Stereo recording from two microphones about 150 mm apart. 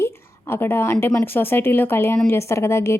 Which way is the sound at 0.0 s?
15° left (ahead or behind).